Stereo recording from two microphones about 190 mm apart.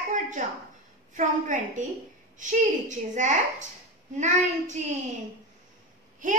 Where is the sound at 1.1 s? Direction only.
40° right (ahead or behind).